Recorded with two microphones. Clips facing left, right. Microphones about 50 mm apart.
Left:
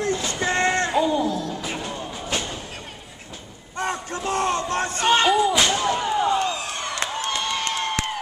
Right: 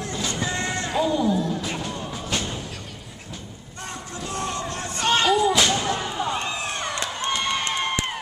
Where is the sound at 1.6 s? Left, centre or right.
Centre.